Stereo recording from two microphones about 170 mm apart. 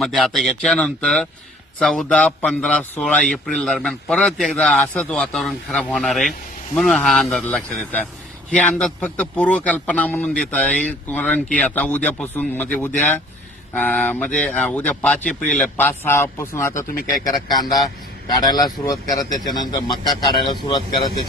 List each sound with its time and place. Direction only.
0.0 s a man's voice: centre (ahead or behind)
13.7 s a man's voice: 10° left (ahead or behind); by 20.8 s 25° left (ahead or behind)